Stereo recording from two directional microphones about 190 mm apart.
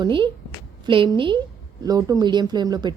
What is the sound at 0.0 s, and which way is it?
A woman's voice, 25° right (ahead or behind).